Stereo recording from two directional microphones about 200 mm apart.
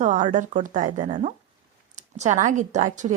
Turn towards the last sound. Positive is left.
turn(degrees=-40)  # may be behind; listen again after turning